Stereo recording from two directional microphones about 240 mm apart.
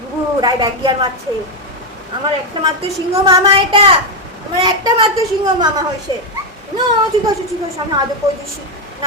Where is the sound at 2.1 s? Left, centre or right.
Centre.